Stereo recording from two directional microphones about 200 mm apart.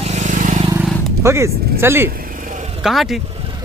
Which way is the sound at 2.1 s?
40° right (ahead or behind).